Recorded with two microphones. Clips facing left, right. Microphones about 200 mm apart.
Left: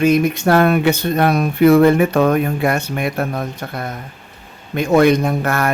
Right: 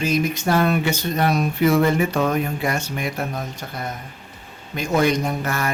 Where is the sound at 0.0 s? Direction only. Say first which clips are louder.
Left 7 dB; 60° left (ahead or behind).